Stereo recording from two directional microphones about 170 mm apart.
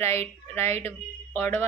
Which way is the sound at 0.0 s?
15° left (ahead or behind).